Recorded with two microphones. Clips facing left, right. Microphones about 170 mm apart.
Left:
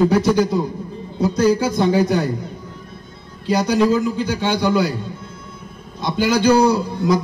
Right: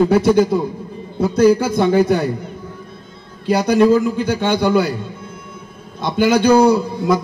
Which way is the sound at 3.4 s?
55° right (ahead or behind).